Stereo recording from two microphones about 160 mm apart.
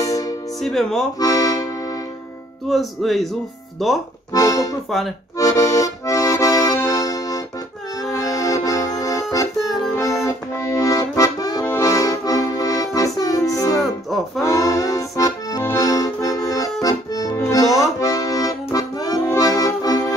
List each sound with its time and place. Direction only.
0.0 s music: 20° left (ahead or behind)
0.6 s speech: centre (ahead or behind)
1.2 s accordion: 20° left (ahead or behind)
2.7 s speech: centre (ahead or behind)
4.3 s accordion: 20° left (ahead or behind)
10.2 s accordion: 20° left (ahead or behind)
17.5 s music: 20° left (ahead or behind)
18.0 s accordion: 20° left (ahead or behind)